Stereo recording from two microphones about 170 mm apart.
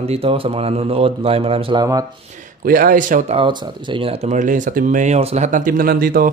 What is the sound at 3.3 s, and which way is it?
A man's voice, 30° right (ahead or behind).